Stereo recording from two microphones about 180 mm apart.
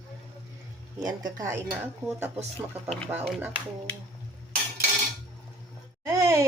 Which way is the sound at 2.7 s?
35° right (ahead or behind).